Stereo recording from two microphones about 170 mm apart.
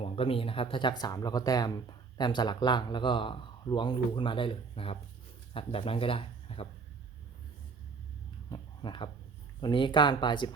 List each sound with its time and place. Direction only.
0.0 s speech: 35° left (ahead or behind)
8.4 s a sound: 25° left (ahead or behind)
9.6 s speech: 25° left (ahead or behind)